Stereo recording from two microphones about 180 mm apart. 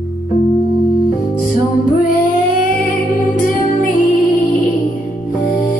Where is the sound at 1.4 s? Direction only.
50° left (ahead or behind).